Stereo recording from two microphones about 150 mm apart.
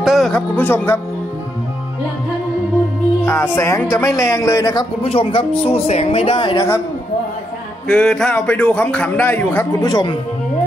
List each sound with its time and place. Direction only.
0.0 s music: centre (ahead or behind)
0.6 s speech: 10° left (ahead or behind)
3.3 s a man's voice: 15° left (ahead or behind)
5.0 s a man's voice: 40° left (ahead or behind)
6.5 s a man's voice: 20° left (ahead or behind)
7.9 s speech: 5° left (ahead or behind)
9.8 s a man's voice: 25° left (ahead or behind)